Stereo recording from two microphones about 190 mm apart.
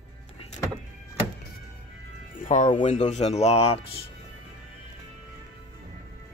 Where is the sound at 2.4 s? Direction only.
40° left (ahead or behind).